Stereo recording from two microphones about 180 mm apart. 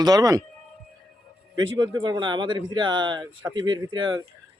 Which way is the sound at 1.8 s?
25° right (ahead or behind).